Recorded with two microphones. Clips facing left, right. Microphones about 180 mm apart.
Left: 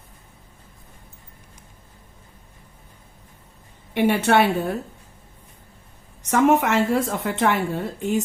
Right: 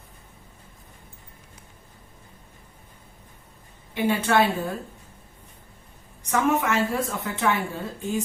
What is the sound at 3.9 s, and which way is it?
Speech, 70° left (ahead or behind).